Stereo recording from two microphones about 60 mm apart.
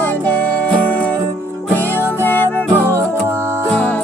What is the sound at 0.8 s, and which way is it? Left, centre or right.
Music, left.